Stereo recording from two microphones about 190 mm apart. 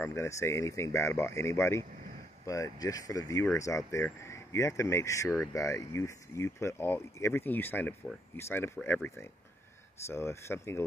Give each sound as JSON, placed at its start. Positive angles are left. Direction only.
{"t": 0.0, "sound": "speech", "side_deg": 15}